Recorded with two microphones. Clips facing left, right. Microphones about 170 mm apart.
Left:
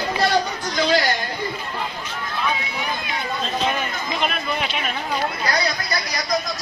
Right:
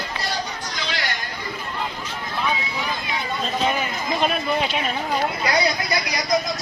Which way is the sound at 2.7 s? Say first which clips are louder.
Even; centre (ahead or behind).